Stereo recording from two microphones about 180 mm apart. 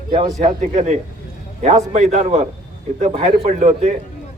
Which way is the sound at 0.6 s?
40° right (ahead or behind).